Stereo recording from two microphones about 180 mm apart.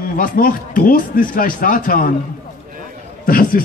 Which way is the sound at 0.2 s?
55° left (ahead or behind).